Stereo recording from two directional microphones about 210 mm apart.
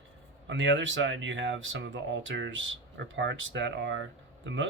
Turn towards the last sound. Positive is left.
turn(degrees=-60)  # may be behind; listen again after turning